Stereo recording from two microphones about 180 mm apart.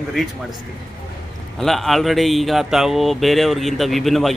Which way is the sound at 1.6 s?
Centre (ahead or behind).